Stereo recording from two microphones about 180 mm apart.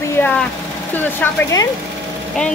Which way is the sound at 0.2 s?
10° left (ahead or behind).